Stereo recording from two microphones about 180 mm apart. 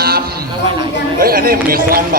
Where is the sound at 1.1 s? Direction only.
55° right (ahead or behind).